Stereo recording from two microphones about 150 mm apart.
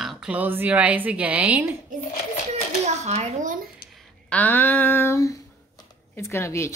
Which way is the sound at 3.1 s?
55° right (ahead or behind).